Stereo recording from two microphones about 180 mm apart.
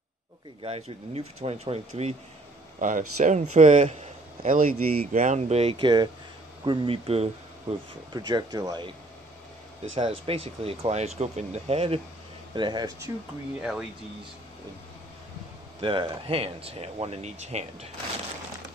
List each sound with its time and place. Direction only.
0.6 s speech: 35° right (ahead or behind)
10.2 s speech: 35° right (ahead or behind)
12.5 s speech: 25° right (ahead or behind)
13.6 s speech: 5° right (ahead or behind)
15.8 s speech: 30° right (ahead or behind)